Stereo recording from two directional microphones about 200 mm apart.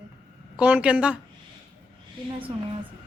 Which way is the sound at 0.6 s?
5° right (ahead or behind).